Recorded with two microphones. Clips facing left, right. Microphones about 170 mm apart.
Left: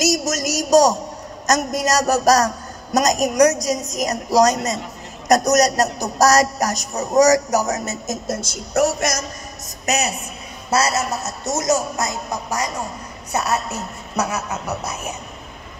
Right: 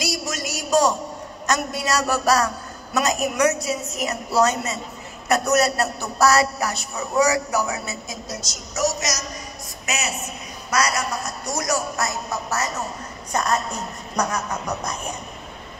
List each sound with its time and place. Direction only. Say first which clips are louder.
0.0 s a sound: left 7 dB; 45° left (ahead or behind)
1.5 s a woman's voice: left 4 dB; 40° left (ahead or behind)
9.8 s a woman's voice: left 6 dB; 40° left (ahead or behind)
10.7 s a man's voice: left 3 dB; 25° left (ahead or behind); by 15.1 s 5° left (ahead or behind)